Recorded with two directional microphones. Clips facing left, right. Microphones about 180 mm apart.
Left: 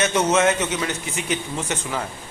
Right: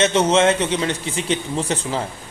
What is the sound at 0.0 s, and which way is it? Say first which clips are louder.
Speech: right 3 dB; 30° right (ahead or behind).